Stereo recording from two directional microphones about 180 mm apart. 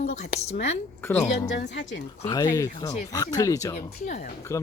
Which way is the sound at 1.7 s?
80° left.